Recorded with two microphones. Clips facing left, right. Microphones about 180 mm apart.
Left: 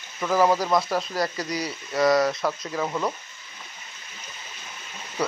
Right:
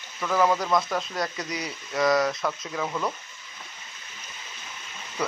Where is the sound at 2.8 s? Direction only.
15° left (ahead or behind).